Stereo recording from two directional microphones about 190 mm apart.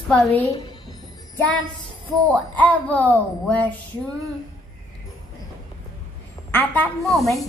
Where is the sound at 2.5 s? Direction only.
10° left (ahead or behind).